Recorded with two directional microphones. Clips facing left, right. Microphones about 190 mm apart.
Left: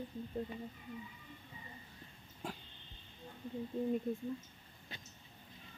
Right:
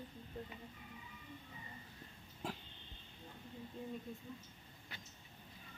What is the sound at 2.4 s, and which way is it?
Throat clearing, centre (ahead or behind).